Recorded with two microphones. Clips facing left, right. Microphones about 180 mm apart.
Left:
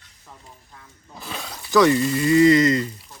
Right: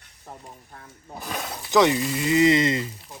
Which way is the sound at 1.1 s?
20° right (ahead or behind).